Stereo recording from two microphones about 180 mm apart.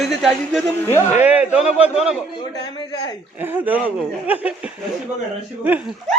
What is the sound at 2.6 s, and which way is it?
Speech, 25° left (ahead or behind).